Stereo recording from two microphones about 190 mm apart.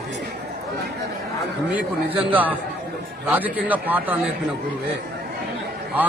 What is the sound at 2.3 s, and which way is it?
Speech, 10° right (ahead or behind).